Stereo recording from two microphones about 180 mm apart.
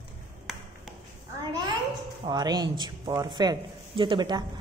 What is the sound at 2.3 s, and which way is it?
Speech, 25° right (ahead or behind).